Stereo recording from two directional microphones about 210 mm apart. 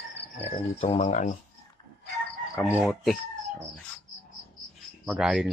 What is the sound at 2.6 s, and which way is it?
Speech, 5° right (ahead or behind).